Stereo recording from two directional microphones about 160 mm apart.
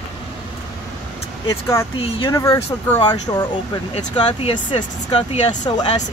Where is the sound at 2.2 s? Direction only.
20° left (ahead or behind).